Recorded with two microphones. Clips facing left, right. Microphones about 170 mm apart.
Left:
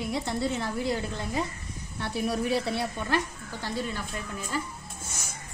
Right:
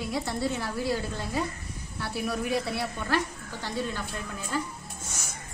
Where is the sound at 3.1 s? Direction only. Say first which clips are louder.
Even; 15° left (ahead or behind).